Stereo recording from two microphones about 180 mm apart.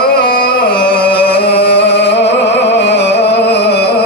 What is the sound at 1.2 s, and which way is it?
Music, 65° left (ahead or behind).